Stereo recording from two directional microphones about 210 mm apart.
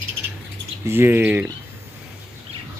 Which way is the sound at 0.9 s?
10° right (ahead or behind).